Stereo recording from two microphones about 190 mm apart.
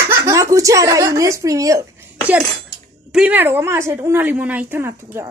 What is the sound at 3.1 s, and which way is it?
A woman's voice, 5° right (ahead or behind).